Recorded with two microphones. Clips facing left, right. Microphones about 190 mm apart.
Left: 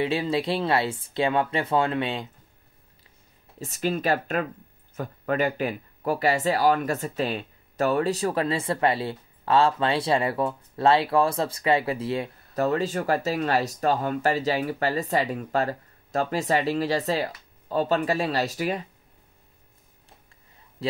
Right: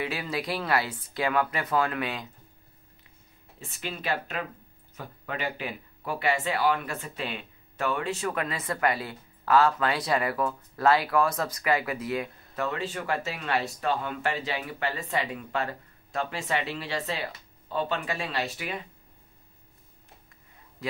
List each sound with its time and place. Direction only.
0.0 s speech: 25° left (ahead or behind)
3.5 s speech: 40° left (ahead or behind)